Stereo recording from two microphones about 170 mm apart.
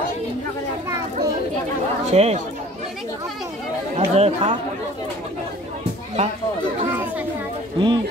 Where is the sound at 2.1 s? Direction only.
40° right (ahead or behind).